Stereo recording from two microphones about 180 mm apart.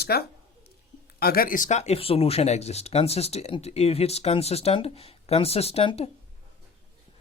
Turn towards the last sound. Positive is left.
turn(degrees=35)  # may be behind; listen again after turning